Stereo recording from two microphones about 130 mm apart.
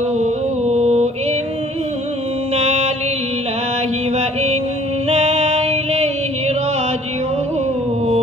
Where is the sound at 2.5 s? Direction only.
60° right (ahead or behind).